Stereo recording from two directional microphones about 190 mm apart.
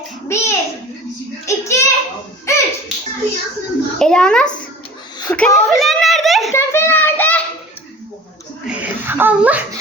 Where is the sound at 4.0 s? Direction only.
5° left (ahead or behind).